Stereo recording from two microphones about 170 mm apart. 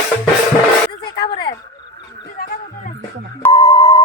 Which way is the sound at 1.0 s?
30° left (ahead or behind).